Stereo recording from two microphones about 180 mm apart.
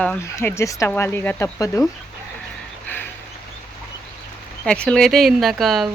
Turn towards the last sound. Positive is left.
turn(degrees=0)  # may be behind; listen again after turning